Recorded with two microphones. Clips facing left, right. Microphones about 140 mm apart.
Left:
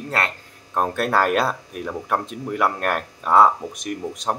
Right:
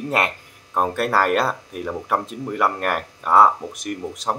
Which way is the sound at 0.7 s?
5° right (ahead or behind).